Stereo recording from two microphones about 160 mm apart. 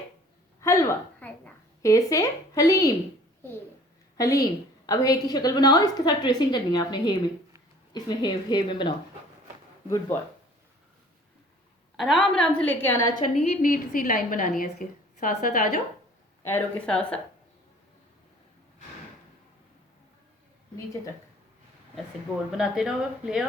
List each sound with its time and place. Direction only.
0.6 s a sound: 20° left (ahead or behind)
1.8 s a woman's voice: 20° left (ahead or behind)
4.2 s a woman's voice: 20° left (ahead or behind)
11.9 s a woman's voice: centre (ahead or behind); by 13.2 s 20° left (ahead or behind)
13.5 s a woman's voice: 60° left (ahead or behind)
16.4 s a woman's voice: 15° left (ahead or behind)
22.5 s a woman's voice: 5° right (ahead or behind)